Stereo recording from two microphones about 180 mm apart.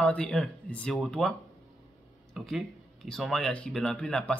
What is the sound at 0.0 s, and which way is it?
Speech, 5° left (ahead or behind).